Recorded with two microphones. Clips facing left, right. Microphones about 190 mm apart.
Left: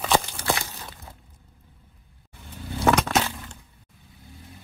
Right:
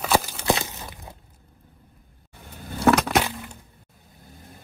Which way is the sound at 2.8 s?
Centre (ahead or behind).